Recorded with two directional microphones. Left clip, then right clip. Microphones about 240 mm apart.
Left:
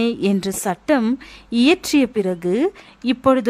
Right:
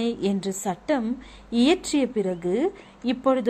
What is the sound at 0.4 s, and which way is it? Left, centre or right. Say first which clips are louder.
A woman's voice: left 6 dB; left.